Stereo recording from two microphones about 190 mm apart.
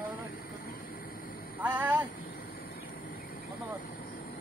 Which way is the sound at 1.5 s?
10° right (ahead or behind).